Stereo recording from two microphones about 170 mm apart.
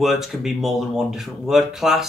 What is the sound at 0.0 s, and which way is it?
Speech, centre (ahead or behind).